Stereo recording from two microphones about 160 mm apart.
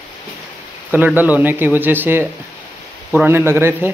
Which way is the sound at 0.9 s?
10° right (ahead or behind).